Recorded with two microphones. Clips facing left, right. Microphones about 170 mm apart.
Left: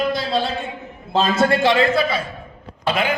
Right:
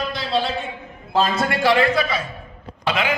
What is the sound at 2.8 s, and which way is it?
Speech, 55° left (ahead or behind).